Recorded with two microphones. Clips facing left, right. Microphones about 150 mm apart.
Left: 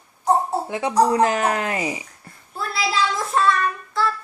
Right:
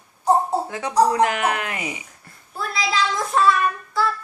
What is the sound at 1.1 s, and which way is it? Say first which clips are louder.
Speech: left 1 dB; 35° left (ahead or behind).